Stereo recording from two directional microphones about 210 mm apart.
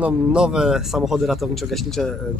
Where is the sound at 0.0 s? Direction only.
5° right (ahead or behind).